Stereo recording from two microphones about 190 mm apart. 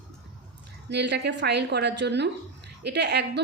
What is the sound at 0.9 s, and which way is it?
A woman's voice, 65° right (ahead or behind).